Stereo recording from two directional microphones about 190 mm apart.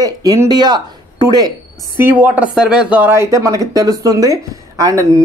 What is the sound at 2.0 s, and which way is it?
Speech, 10° right (ahead or behind).